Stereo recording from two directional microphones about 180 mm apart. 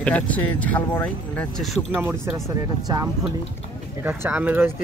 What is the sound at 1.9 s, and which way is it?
Speech, 15° right (ahead or behind).